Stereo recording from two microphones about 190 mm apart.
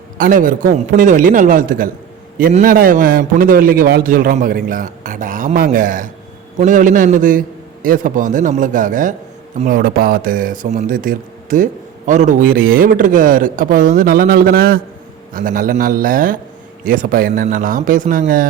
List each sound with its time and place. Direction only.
0.2 s speech: 45° right (ahead or behind)